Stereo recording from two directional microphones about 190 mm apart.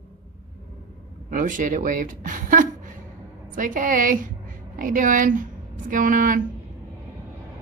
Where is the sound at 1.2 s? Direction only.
45° right (ahead or behind).